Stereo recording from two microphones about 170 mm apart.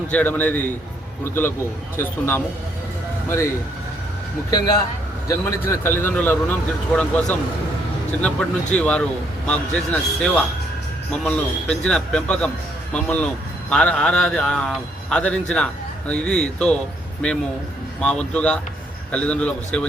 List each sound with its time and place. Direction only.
0.1 s a man's voice: 10° left (ahead or behind)
5.3 s a man's voice: 20° left (ahead or behind)
18.0 s a man's voice: 5° left (ahead or behind)